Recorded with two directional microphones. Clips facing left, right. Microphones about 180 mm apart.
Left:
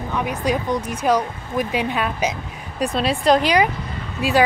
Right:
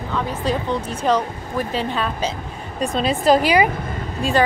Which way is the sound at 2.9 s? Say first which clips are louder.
Right 1 dB; centre (ahead or behind).